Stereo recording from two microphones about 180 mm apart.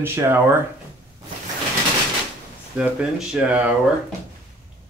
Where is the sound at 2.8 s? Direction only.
5° right (ahead or behind).